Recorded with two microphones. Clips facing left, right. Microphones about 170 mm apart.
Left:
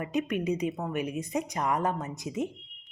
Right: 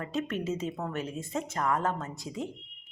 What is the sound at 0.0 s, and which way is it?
A woman's voice, 15° left (ahead or behind).